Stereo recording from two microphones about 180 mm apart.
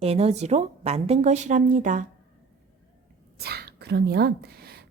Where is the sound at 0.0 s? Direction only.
35° right (ahead or behind).